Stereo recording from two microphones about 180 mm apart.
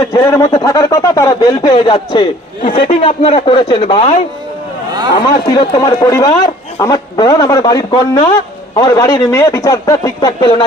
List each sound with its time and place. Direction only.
0.1 s speech: 20° left (ahead or behind)
5.1 s speech: 25° left (ahead or behind)